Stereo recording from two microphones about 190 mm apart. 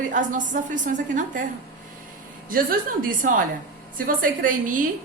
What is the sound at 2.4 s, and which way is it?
A woman's voice, 50° right (ahead or behind).